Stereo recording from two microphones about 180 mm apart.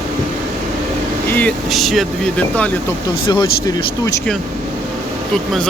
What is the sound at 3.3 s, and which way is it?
Speech, 20° left (ahead or behind).